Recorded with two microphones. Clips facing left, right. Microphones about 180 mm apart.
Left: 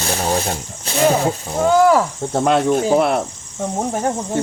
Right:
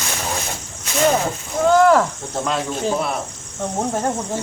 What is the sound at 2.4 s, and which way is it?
Speech, 60° left (ahead or behind).